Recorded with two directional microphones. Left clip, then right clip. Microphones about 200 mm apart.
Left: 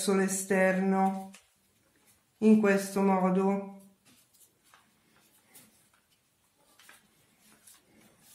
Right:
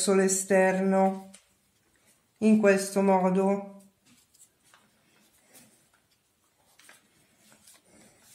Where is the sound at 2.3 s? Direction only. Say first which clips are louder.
Right 2 dB; 40° right (ahead or behind).